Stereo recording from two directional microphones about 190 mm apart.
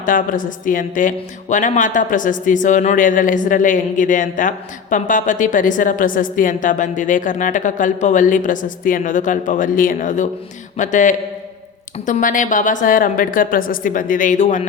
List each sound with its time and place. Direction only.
0.0 s a man's voice: 45° left (ahead or behind)